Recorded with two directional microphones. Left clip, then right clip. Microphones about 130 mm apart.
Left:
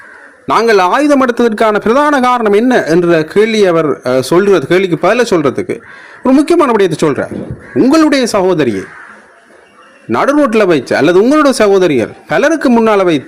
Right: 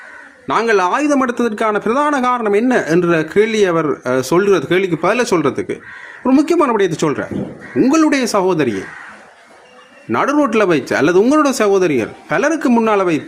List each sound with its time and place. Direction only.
0.4 s a man's voice: 50° left (ahead or behind); by 8.8 s 35° left (ahead or behind)
10.1 s a man's voice: 35° left (ahead or behind)